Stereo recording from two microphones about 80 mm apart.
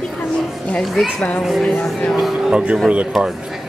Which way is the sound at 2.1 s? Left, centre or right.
Centre.